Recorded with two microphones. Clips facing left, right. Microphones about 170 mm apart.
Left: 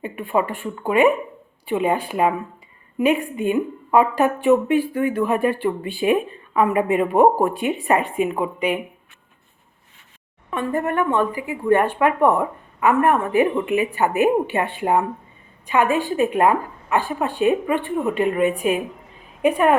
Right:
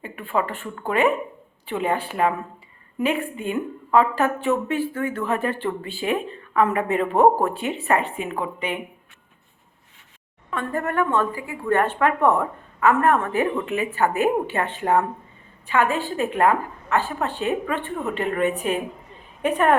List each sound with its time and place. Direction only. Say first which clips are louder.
0.0 s a woman's voice: left 3 dB; 20° left (ahead or behind)
10.5 s a woman's voice: left 3 dB; 20° left (ahead or behind)